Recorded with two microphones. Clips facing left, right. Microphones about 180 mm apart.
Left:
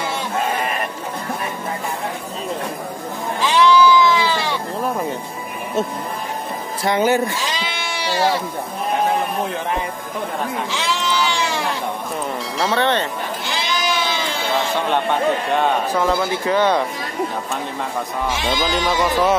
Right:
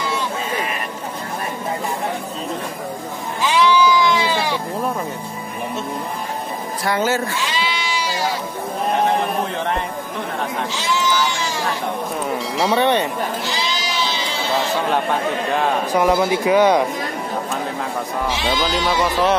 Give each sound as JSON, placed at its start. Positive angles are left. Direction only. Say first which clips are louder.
{"t": 3.5, "sound": "sheep", "louder": "left 2 dB", "side_deg": -15}
{"t": 6.8, "sound": "speech", "louder": "left 3 dB", "side_deg": 20}
{"t": 7.3, "sound": "sheep", "louder": "right 2 dB", "side_deg": 40}
{"t": 10.7, "sound": "sheep", "louder": "right 1 dB", "side_deg": 60}
{"t": 12.7, "sound": "speech", "louder": "right 2 dB", "side_deg": -15}
{"t": 13.5, "sound": "sheep", "louder": "left 2 dB", "side_deg": 55}
{"t": 15.9, "sound": "speech", "louder": "right 3 dB", "side_deg": -15}
{"t": 18.5, "sound": "speech", "louder": "even", "side_deg": 0}